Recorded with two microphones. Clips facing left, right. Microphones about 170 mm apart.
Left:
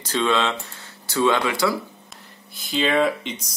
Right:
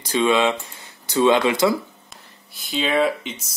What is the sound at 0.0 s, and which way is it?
Speech, 10° right (ahead or behind).